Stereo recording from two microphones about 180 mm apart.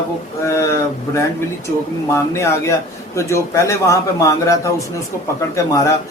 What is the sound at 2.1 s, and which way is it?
A man's voice, 15° left (ahead or behind).